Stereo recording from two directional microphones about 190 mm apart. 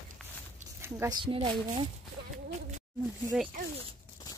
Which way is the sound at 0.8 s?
15° right (ahead or behind).